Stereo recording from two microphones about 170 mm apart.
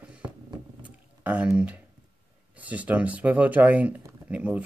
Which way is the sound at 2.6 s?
10° right (ahead or behind).